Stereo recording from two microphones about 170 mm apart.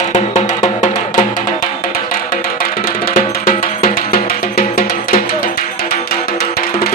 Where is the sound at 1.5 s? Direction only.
55° left (ahead or behind).